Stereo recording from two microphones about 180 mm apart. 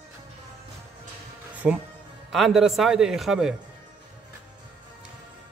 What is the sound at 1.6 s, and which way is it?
A man's voice, 5° right (ahead or behind).